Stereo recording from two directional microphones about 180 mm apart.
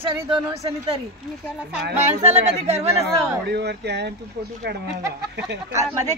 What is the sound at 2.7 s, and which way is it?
Speech, 15° right (ahead or behind).